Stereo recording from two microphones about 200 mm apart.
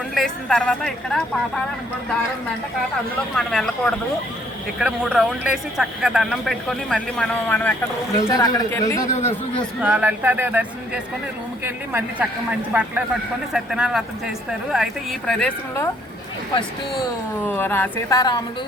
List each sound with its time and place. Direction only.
0.1 s speech: centre (ahead or behind)
3.3 s speech: 5° left (ahead or behind)
8.2 s speech: 20° left (ahead or behind)
9.8 s speech: 5° right (ahead or behind)
17.4 s a woman's voice: 10° left (ahead or behind)